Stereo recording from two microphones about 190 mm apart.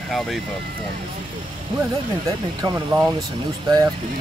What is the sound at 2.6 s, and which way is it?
Speech, 20° right (ahead or behind).